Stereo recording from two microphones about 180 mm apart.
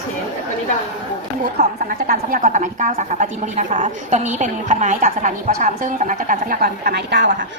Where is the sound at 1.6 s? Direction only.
65° right (ahead or behind).